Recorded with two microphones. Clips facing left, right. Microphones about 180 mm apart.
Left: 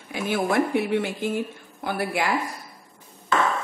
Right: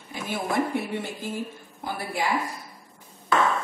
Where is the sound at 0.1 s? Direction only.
70° left (ahead or behind).